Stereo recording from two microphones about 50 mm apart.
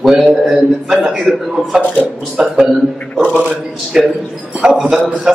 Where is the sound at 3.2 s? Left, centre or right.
Right.